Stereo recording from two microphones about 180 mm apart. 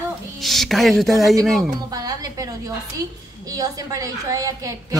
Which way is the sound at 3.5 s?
20° right (ahead or behind).